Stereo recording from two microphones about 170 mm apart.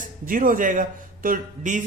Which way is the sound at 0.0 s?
55° right (ahead or behind).